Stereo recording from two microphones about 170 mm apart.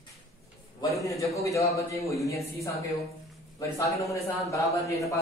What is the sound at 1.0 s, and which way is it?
A man's voice, 20° left (ahead or behind).